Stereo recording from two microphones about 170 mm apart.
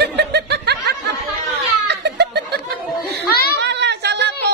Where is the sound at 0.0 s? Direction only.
80° right.